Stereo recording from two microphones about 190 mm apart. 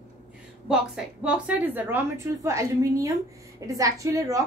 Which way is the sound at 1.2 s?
10° right (ahead or behind).